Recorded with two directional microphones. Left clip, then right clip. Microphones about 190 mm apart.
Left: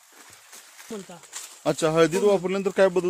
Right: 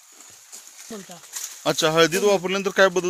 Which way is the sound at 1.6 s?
5° left (ahead or behind).